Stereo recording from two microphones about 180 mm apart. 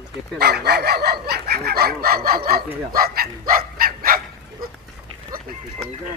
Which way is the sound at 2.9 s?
55° right (ahead or behind).